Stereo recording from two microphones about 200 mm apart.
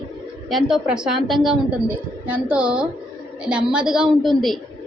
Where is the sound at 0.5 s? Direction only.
Centre (ahead or behind).